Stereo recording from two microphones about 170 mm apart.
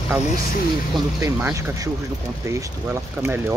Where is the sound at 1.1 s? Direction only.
15° right (ahead or behind).